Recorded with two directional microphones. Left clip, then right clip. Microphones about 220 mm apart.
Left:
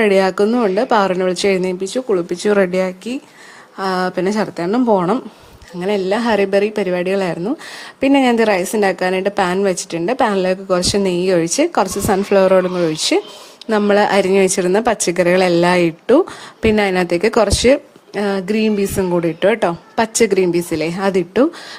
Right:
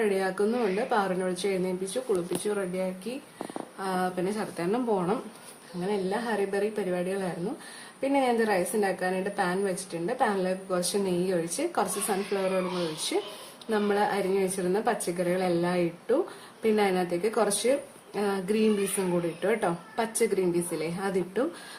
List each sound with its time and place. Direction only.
0.0 s a woman's voice: 40° left (ahead or behind)
13.7 s a woman's voice: 45° left (ahead or behind)